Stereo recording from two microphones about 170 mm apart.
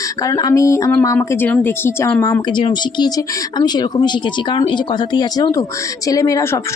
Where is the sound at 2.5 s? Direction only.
25° left (ahead or behind).